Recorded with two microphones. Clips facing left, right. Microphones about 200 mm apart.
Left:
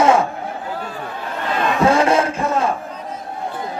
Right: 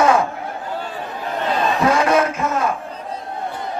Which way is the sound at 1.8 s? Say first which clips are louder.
Left 2 dB; 30° left (ahead or behind).